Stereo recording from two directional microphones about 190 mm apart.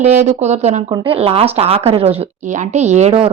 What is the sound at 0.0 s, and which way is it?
Speech, 40° right (ahead or behind).